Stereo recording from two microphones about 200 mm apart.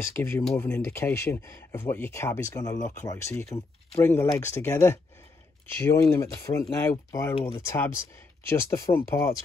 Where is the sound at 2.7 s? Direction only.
40° left (ahead or behind).